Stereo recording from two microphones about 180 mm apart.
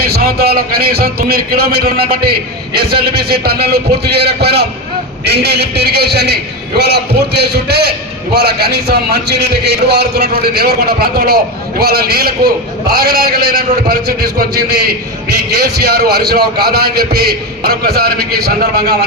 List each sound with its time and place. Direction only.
0.0 s a man's voice: 55° right (ahead or behind)